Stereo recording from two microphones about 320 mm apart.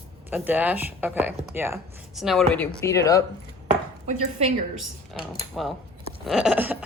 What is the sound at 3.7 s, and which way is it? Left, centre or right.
Chopping, right.